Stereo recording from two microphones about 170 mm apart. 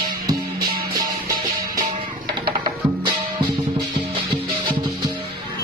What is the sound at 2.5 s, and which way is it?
Music, 25° right (ahead or behind).